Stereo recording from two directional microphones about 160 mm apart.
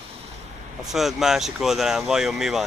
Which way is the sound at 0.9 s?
Centre (ahead or behind).